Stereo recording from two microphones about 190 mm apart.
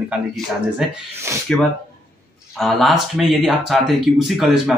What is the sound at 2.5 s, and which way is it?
Speech, centre (ahead or behind).